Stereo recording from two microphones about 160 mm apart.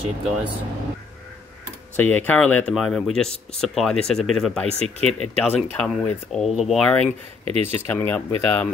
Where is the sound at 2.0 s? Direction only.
10° left (ahead or behind).